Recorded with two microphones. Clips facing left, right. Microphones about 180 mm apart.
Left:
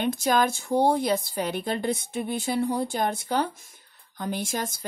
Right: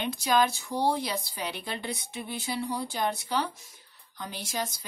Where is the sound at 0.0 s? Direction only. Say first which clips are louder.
Left 3 dB; 50° left (ahead or behind).